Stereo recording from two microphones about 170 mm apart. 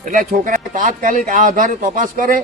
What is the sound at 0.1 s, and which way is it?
A man's voice, 50° right (ahead or behind).